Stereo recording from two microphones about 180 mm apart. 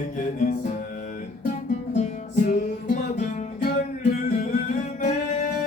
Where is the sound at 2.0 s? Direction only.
40° left (ahead or behind).